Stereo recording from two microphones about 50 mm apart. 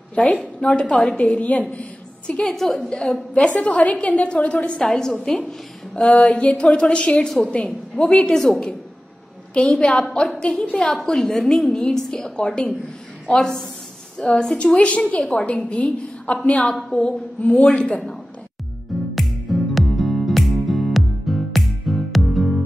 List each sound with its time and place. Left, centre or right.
0.1 s a woman's voice: left
2.4 s a woman's voice: centre
2.7 s a woman's voice: centre
4.8 s a woman's voice: centre
11.1 s a woman's voice: centre
15.4 s a woman's voice: left
19.1 s music: centre